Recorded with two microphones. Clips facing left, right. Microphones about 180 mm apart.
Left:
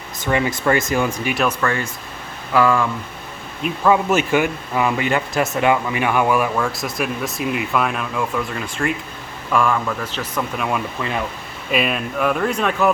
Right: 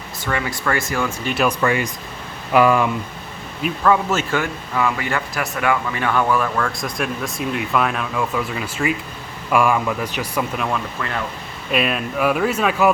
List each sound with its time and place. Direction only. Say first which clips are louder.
0.3 s speech: left 5 dB; 20° left (ahead or behind)
1.5 s speech: right 2 dB; 15° right (ahead or behind)
3.8 s speech: left 2 dB; 15° left (ahead or behind); by 10.4 s 15° right (ahead or behind)
11.7 s speech: even; centre (ahead or behind)